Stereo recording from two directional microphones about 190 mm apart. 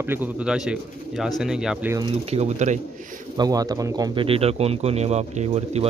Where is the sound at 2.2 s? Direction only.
35° right (ahead or behind).